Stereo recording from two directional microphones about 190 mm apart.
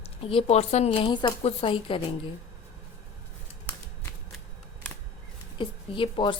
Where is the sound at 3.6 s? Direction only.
15° left (ahead or behind).